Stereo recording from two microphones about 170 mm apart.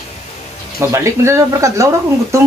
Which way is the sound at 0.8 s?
15° right (ahead or behind).